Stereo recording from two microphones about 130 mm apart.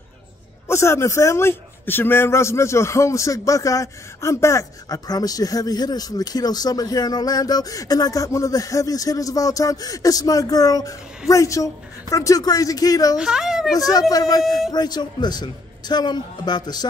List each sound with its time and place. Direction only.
0.7 s a man's voice: 20° left (ahead or behind)
13.2 s a woman's voice: 5° right (ahead or behind)
13.9 s a man's voice: 30° left (ahead or behind)